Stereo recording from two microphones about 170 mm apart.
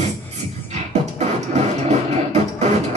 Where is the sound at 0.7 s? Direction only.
40° right (ahead or behind).